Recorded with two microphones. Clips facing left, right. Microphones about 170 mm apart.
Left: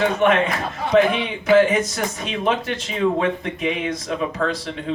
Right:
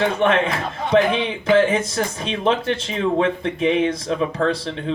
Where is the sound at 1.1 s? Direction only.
30° right (ahead or behind).